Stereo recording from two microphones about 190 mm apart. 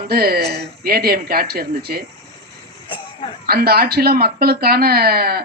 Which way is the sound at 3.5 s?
50° right (ahead or behind).